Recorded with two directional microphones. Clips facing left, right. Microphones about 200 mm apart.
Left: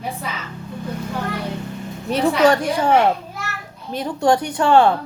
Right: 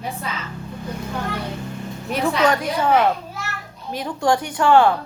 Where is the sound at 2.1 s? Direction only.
30° left (ahead or behind).